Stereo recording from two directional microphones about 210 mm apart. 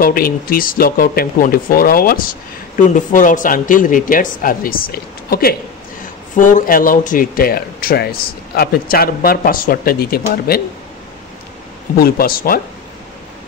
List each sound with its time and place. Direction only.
0.0 s speech: 45° left (ahead or behind)
12.0 s speech: 45° left (ahead or behind)